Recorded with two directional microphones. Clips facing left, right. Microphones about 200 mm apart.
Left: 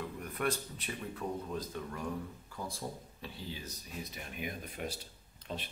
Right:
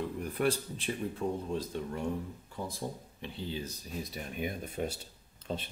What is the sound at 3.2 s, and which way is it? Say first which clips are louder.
Speech: right 6 dB; 30° right (ahead or behind).